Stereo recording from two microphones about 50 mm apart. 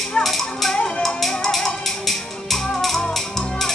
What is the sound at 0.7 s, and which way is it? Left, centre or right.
Music, left.